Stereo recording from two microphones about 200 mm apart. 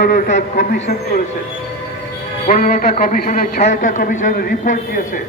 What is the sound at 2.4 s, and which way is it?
A man's voice, 40° left (ahead or behind).